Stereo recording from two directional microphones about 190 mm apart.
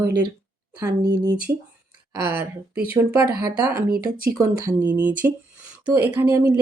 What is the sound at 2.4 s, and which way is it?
Speech, 55° right (ahead or behind).